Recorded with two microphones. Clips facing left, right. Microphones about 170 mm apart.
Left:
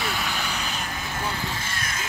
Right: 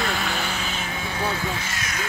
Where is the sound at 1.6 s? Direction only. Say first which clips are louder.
Right 1 dB; 55° left (ahead or behind).